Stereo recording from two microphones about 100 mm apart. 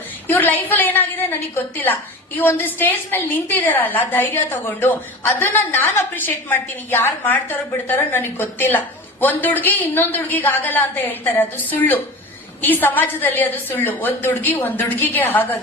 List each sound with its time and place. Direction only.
0.3 s a woman's voice: 20° left (ahead or behind)